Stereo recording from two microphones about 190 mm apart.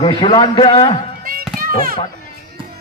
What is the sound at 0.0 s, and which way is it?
Speech, 25° left (ahead or behind).